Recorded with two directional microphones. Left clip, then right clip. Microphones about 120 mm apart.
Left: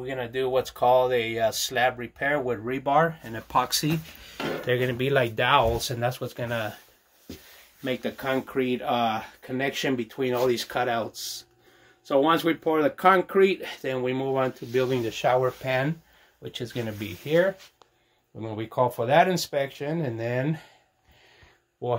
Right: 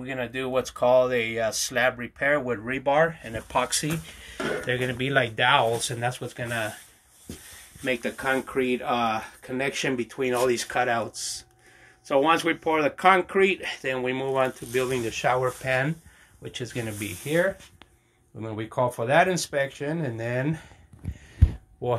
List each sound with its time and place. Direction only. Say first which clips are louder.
0.0 s speech: left 2 dB; 40° left (ahead or behind)
2.7 s speech: right 1 dB; 60° left (ahead or behind)
7.8 s speech: right 2 dB; 35° left (ahead or behind)
15.0 s speech: left 1 dB; 30° left (ahead or behind)